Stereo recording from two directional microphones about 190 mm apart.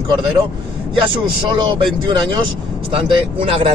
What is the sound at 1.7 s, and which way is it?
Speech, 25° right (ahead or behind).